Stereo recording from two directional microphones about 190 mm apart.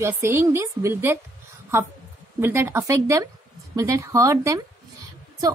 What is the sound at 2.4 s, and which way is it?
A woman's voice, 10° right (ahead or behind).